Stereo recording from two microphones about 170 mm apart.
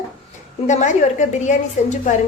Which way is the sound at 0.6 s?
45° left (ahead or behind).